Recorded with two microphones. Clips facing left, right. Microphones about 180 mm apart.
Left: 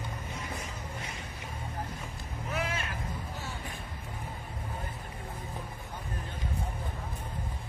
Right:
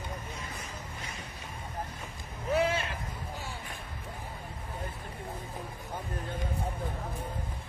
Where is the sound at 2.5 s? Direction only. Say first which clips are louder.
Right 7 dB; 30° right (ahead or behind).